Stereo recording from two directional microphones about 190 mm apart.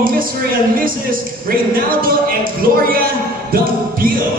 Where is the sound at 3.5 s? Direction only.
50° right (ahead or behind).